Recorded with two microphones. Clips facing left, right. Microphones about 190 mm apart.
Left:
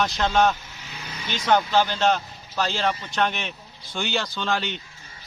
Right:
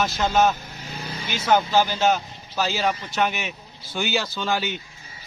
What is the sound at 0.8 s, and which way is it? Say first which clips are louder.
Vehicle: right 6 dB; 35° right (ahead or behind).